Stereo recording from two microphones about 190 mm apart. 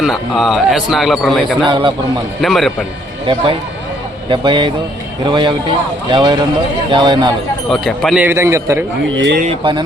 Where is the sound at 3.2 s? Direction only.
25° right (ahead or behind).